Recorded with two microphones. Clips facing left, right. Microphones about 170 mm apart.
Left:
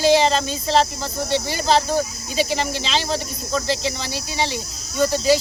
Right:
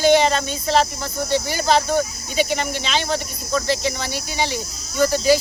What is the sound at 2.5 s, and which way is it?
Speech, 30° left (ahead or behind).